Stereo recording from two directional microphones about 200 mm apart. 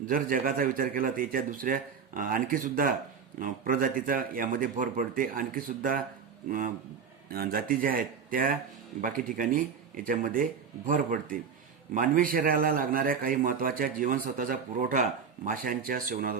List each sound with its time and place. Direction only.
0.0 s a man's voice: 45° right (ahead or behind)
7.3 s a man's voice: 50° right (ahead or behind)